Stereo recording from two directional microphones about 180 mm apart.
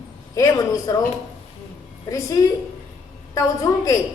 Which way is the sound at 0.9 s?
15° left (ahead or behind).